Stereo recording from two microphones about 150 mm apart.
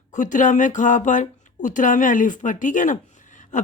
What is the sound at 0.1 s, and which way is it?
Speech, 55° left (ahead or behind).